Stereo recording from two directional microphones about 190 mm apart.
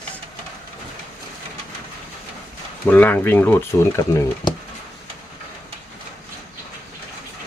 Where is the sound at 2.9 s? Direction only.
10° left (ahead or behind).